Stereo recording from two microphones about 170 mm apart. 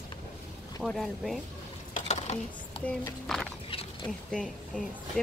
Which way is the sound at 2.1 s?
40° left (ahead or behind).